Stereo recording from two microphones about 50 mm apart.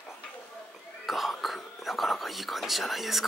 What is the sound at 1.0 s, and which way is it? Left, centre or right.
Whispering, centre.